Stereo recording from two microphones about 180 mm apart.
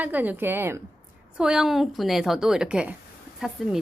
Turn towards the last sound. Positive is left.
turn(degrees=0)  # may be behind; listen again after turning